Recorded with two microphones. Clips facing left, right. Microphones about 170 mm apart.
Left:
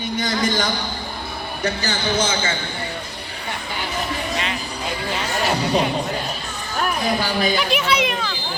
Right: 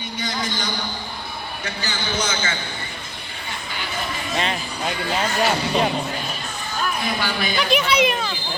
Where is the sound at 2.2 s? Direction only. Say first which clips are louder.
Left 1 dB; 25° left (ahead or behind).